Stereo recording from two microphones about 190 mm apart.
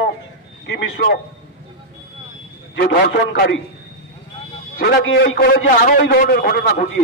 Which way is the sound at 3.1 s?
65° left (ahead or behind).